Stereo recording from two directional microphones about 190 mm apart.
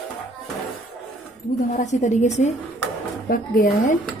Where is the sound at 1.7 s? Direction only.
40° left (ahead or behind).